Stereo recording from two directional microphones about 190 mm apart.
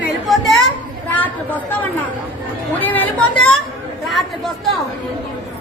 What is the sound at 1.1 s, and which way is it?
Chatter, 10° left (ahead or behind).